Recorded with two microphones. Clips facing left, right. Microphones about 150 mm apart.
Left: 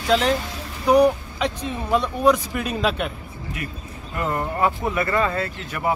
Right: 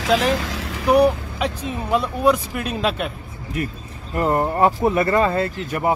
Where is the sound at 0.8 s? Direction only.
5° right (ahead or behind).